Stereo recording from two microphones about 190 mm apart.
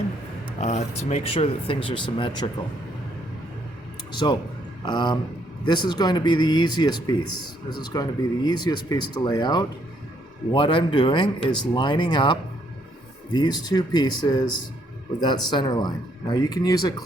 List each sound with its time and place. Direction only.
0.6 s speech: 35° left (ahead or behind)
4.2 s speech: 25° left (ahead or behind)